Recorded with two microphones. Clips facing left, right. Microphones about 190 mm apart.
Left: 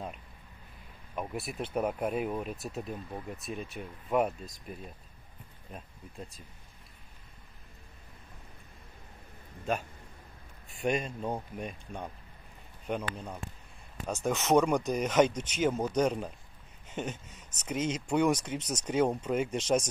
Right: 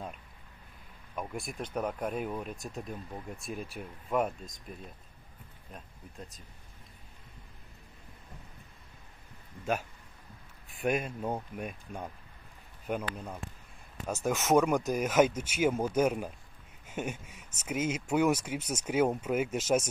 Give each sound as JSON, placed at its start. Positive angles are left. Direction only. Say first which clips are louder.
{"t": 1.1, "sound": "speech", "louder": "left 2 dB", "side_deg": 5}
{"t": 10.7, "sound": "speech", "louder": "even", "side_deg": 0}
{"t": 13.1, "sound": "speech", "louder": "even", "side_deg": -5}